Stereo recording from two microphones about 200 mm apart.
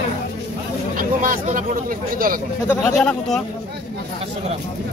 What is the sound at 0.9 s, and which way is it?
Speech, 45° right (ahead or behind).